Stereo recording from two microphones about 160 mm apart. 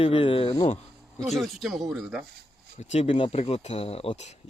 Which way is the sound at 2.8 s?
45° left (ahead or behind).